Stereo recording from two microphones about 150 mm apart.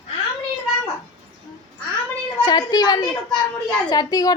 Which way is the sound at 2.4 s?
25° left (ahead or behind).